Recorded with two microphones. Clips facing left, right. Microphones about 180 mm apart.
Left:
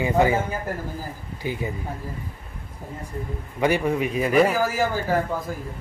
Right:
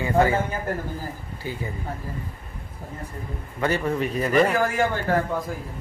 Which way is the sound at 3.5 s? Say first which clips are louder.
Left 2 dB; 15° left (ahead or behind).